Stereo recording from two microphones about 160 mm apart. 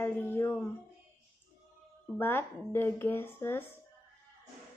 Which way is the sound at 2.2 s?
15° left (ahead or behind).